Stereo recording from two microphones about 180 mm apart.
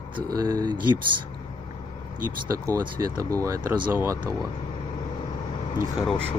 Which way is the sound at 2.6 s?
15° right (ahead or behind).